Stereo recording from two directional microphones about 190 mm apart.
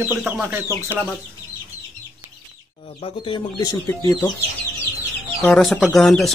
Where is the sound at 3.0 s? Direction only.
25° left (ahead or behind).